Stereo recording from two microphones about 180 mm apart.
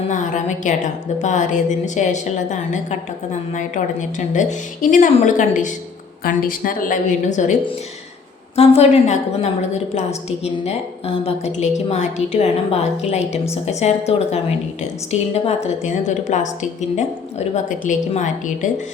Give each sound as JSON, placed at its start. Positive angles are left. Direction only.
{"t": 0.1, "sound": "a woman's voice", "side_deg": 45}
{"t": 4.2, "sound": "a woman's voice", "side_deg": 40}
{"t": 8.5, "sound": "a woman's voice", "side_deg": 35}